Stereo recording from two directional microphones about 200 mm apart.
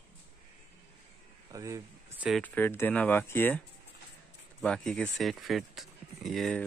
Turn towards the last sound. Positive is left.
turn(degrees=0)  # may be behind; listen again after turning